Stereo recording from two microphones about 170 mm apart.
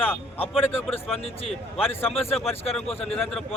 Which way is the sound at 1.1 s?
35° left (ahead or behind).